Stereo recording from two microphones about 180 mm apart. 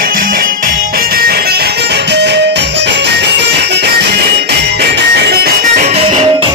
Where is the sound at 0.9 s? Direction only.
60° right (ahead or behind).